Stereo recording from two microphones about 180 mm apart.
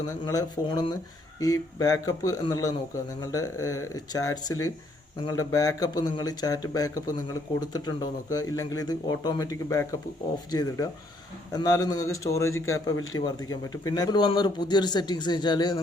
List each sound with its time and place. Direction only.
0.3 s speech: 20° left (ahead or behind)